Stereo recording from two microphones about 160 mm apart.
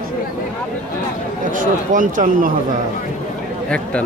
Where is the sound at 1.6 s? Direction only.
55° right (ahead or behind).